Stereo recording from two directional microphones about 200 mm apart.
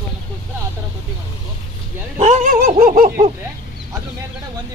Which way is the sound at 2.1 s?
35° right (ahead or behind).